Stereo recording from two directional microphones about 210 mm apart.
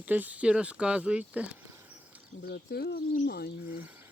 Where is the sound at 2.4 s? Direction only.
50° left (ahead or behind).